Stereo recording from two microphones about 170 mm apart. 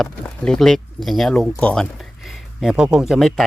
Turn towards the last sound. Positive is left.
turn(degrees=0)  # may be behind; listen again after turning